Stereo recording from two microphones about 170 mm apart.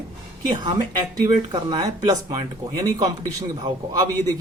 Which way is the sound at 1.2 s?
25° right (ahead or behind).